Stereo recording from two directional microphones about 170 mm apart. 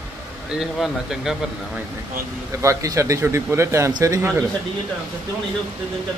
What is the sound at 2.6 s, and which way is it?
Speech, 20° right (ahead or behind).